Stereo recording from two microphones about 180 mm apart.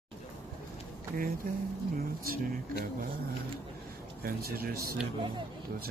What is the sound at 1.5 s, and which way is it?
Speech, 55° right (ahead or behind).